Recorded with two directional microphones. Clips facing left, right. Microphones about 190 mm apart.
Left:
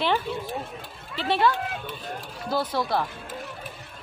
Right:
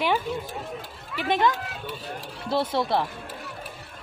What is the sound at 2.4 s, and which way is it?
Speech, 25° right (ahead or behind).